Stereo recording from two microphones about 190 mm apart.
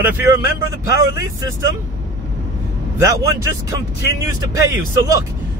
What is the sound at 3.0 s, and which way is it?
Speech, 15° right (ahead or behind).